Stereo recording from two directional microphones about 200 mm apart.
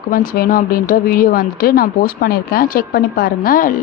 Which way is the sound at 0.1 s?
45° left (ahead or behind).